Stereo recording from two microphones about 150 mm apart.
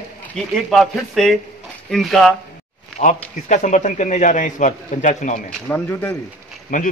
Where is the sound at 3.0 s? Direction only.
45° left (ahead or behind).